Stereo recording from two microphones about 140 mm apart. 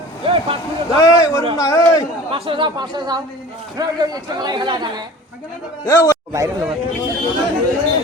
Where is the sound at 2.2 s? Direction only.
40° right (ahead or behind).